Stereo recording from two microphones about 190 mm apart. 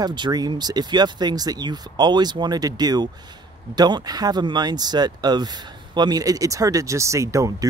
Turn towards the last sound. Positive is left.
turn(degrees=-15)  # may be behind; listen again after turning